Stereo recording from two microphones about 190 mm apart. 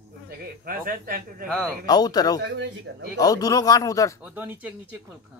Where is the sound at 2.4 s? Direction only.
70° right (ahead or behind).